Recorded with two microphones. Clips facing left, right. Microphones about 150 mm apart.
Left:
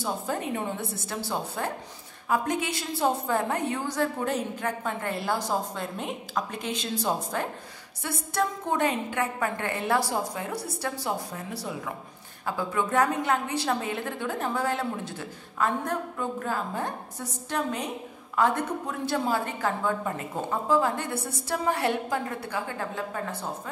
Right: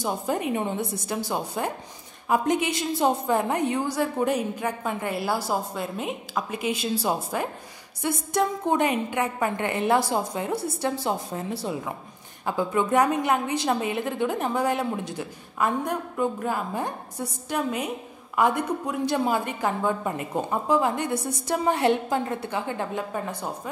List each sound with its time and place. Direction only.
0.0 s a woman's voice: 15° right (ahead or behind)